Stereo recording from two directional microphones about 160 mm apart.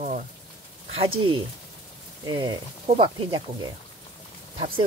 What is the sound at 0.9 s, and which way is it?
Speech, 35° right (ahead or behind).